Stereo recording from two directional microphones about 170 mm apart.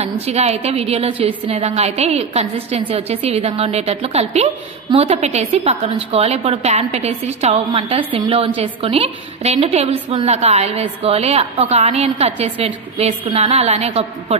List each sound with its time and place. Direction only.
0.0 s a woman's voice: 40° right (ahead or behind)